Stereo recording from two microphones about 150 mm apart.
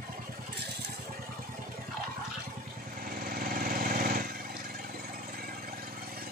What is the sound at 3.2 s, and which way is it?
Lawn mower, 80° right.